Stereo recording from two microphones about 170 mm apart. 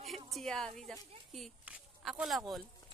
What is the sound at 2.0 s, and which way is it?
Speech, centre (ahead or behind).